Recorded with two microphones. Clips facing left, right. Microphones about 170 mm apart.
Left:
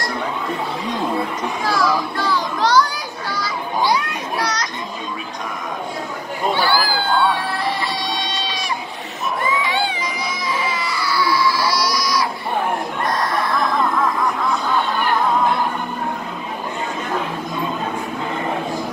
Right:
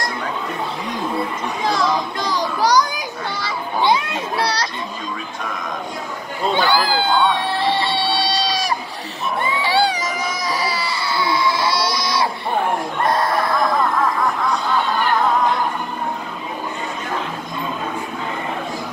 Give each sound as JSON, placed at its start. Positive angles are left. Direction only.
{"t": 1.7, "sound": "children playing", "side_deg": -20}
{"t": 6.5, "sound": "speech", "side_deg": -20}
{"t": 7.3, "sound": "music", "side_deg": -25}
{"t": 9.4, "sound": "baby cry", "side_deg": -30}
{"t": 13.0, "sound": "a sound", "side_deg": -25}